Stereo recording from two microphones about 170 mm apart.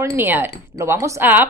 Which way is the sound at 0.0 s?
10° right (ahead or behind).